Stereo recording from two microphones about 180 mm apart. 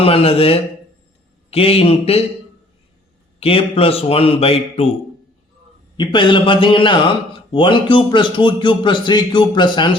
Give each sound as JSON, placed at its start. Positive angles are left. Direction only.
{"t": 0.0, "sound": "speech", "side_deg": 30}
{"t": 3.4, "sound": "speech", "side_deg": 30}
{"t": 6.0, "sound": "a man's voice", "side_deg": 25}